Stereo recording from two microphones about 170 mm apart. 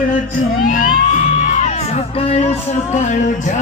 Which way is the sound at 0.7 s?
50° left (ahead or behind).